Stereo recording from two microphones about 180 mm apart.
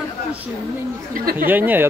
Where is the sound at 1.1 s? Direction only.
50° right (ahead or behind).